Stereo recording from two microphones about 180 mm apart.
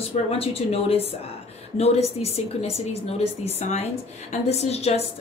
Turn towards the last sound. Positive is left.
turn(degrees=35)  # may be behind; listen again after turning